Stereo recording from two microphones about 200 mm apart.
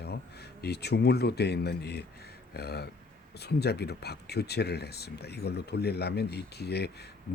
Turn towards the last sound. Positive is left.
turn(degrees=55)  # may be behind; listen again after turning